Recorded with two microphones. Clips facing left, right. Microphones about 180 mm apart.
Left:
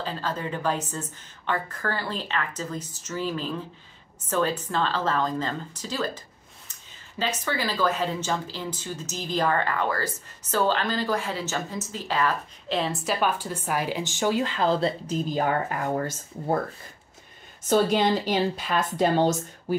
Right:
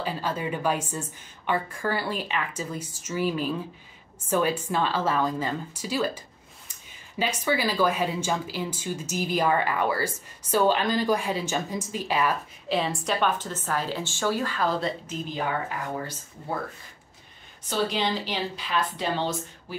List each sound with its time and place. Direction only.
0.0 s speech: 10° right (ahead or behind)
12.6 s a woman's voice: centre (ahead or behind); by 15.4 s 40° left (ahead or behind)
17.6 s speech: 45° left (ahead or behind)